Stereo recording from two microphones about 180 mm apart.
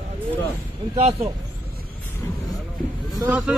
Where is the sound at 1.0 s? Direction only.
35° right (ahead or behind).